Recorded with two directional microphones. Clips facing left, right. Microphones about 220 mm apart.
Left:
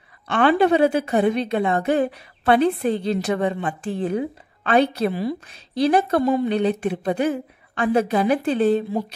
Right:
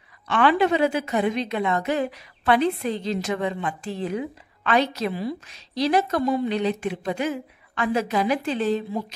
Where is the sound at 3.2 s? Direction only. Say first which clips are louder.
Left 4 dB; 40° left (ahead or behind).